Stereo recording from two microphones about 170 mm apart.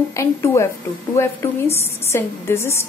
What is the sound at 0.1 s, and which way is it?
A woman's voice, 15° left (ahead or behind).